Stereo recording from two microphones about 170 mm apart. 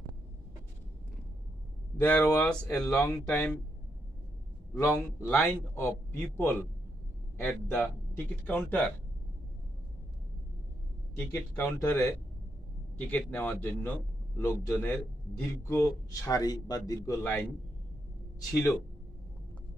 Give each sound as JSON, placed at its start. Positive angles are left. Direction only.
{"t": 2.0, "sound": "speech", "side_deg": 10}
{"t": 4.7, "sound": "speech", "side_deg": 15}
{"t": 11.1, "sound": "a man's voice", "side_deg": 15}
{"t": 18.5, "sound": "speech", "side_deg": 15}